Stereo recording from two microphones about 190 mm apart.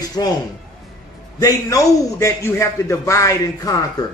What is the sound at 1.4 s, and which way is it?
A man's voice, 15° left (ahead or behind).